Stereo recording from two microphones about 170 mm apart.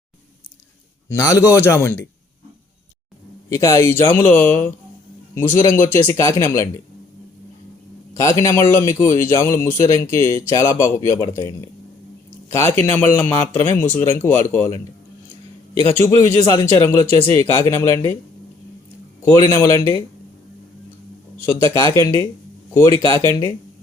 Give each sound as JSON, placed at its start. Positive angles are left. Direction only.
{"t": 1.1, "sound": "speech", "side_deg": 15}
{"t": 3.5, "sound": "speech", "side_deg": 15}
{"t": 8.1, "sound": "speech", "side_deg": 20}
{"t": 15.9, "sound": "speech", "side_deg": 15}
{"t": 19.4, "sound": "speech", "side_deg": 15}
{"t": 21.6, "sound": "speech", "side_deg": 15}